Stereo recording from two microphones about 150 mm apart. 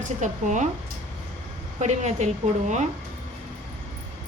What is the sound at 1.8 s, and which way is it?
A woman's voice, 50° right (ahead or behind).